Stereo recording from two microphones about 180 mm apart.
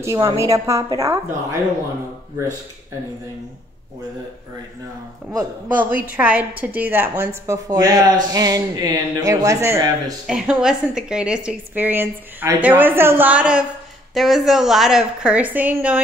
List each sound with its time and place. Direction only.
0.0 s a woman's voice: 15° right (ahead or behind)
5.8 s a woman's voice: 10° right (ahead or behind)
10.2 s a woman's voice: 5° right (ahead or behind)